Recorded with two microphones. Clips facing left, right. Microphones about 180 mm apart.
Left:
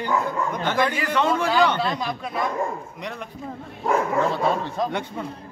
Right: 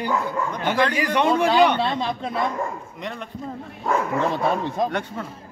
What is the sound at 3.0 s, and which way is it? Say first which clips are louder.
Speech: right 1 dB; 5° left (ahead or behind).